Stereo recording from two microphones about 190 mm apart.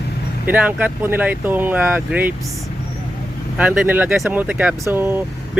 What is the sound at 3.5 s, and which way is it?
Speech, 5° right (ahead or behind).